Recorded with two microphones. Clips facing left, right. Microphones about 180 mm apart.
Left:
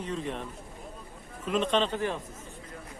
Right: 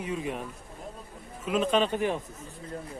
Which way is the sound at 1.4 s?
5° right (ahead or behind).